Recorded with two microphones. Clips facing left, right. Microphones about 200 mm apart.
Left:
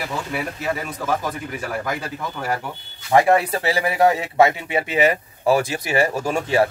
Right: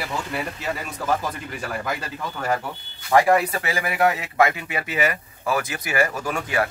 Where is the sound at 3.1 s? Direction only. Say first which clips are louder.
Left 2 dB; 25° left (ahead or behind).